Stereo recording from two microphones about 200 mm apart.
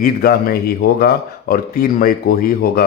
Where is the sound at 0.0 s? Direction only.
50° left (ahead or behind).